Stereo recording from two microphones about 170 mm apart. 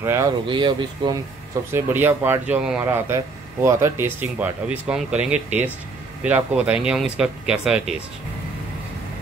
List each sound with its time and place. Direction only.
0.0 s speech: 15° right (ahead or behind)
0.5 s speech: 30° right (ahead or behind)
1.7 s speech: 15° right (ahead or behind)